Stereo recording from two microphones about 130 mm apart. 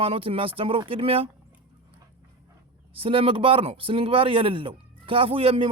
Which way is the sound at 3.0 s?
45° right (ahead or behind).